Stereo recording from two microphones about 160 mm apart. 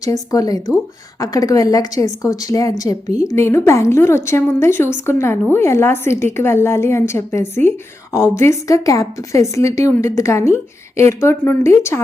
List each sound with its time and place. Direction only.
0.0 s a woman's voice: 20° left (ahead or behind)